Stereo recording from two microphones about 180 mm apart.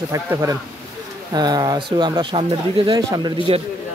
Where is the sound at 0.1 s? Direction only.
15° right (ahead or behind).